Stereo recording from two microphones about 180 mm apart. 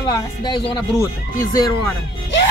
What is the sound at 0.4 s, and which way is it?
Speech, 25° left (ahead or behind).